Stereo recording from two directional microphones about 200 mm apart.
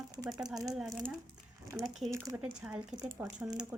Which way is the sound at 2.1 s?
15° right (ahead or behind).